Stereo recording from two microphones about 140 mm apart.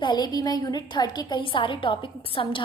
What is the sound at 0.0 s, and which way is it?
A woman's voice, 30° left (ahead or behind).